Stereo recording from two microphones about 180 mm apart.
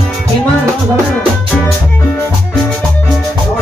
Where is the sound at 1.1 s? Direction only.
10° left (ahead or behind).